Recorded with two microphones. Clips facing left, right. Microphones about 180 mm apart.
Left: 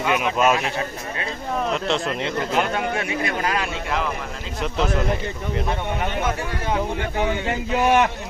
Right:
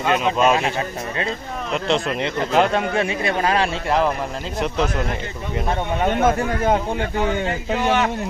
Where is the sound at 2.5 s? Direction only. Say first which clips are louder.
Right 7 dB; 30° right (ahead or behind).